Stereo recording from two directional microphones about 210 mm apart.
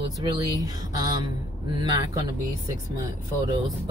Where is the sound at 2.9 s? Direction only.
15° right (ahead or behind).